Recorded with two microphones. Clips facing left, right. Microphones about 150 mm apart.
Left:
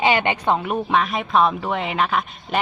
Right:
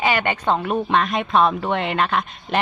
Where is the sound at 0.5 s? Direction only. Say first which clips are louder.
Right 1 dB; 5° left (ahead or behind).